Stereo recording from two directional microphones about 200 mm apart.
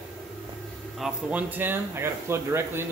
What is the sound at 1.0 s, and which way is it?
Speech, 10° right (ahead or behind).